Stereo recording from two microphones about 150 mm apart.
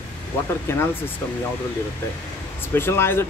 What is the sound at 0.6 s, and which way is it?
Speech, 15° left (ahead or behind).